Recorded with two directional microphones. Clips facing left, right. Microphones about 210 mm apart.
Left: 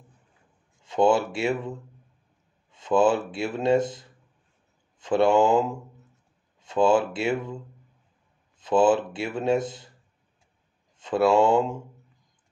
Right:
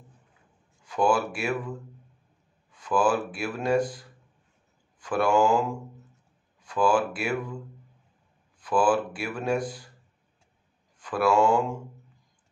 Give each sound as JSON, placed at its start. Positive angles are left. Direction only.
{"t": 0.8, "sound": "speech", "side_deg": 25}
{"t": 8.5, "sound": "speech", "side_deg": 25}
{"t": 11.0, "sound": "speech", "side_deg": 25}